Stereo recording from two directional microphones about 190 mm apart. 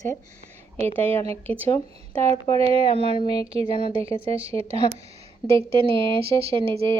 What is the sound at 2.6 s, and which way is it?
Speech, 25° left (ahead or behind).